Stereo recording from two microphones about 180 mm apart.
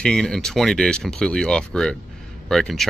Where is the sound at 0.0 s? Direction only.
5° left (ahead or behind).